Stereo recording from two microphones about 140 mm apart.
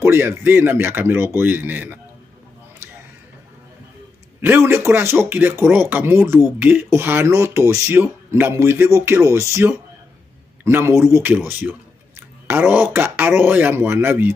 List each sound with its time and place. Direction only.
0.0 s speech: 15° right (ahead or behind)
4.4 s speech: 15° right (ahead or behind)